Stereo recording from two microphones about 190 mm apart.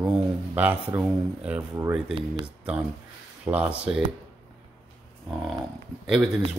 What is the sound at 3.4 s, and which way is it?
Speech, 5° right (ahead or behind).